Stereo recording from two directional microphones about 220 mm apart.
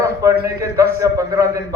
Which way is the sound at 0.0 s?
15° right (ahead or behind).